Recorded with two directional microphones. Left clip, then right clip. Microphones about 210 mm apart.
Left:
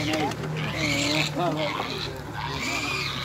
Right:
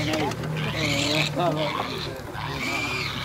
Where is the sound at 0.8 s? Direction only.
20° left (ahead or behind).